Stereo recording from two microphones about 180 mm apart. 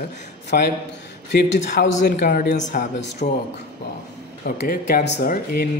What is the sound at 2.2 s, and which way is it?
Speech, 50° left (ahead or behind).